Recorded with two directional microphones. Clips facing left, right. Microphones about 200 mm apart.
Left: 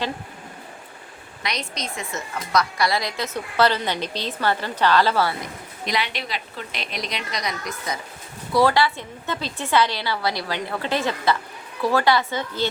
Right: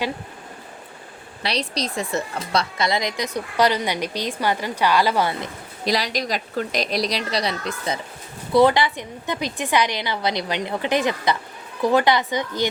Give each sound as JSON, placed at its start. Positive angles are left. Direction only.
{"t": 1.4, "sound": "speech", "side_deg": -30}
{"t": 5.8, "sound": "a woman's voice", "side_deg": -35}